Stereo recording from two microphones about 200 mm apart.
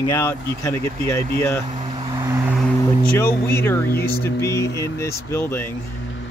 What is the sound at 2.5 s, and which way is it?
Music, 5° left (ahead or behind).